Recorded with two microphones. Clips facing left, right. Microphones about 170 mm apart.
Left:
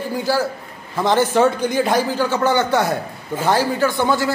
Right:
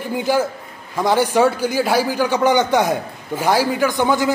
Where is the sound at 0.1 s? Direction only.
20° right (ahead or behind).